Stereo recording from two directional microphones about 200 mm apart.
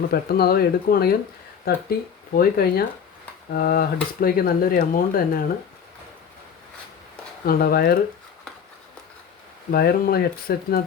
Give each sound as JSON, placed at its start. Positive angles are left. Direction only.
{"t": 0.1, "sound": "speech", "side_deg": 50}
{"t": 7.4, "sound": "speech", "side_deg": 50}
{"t": 9.7, "sound": "speech", "side_deg": 50}